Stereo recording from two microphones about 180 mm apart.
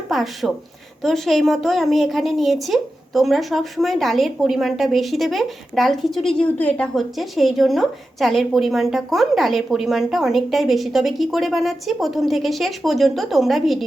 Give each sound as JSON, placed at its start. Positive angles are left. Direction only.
{"t": 0.1, "sound": "a woman's voice", "side_deg": 0}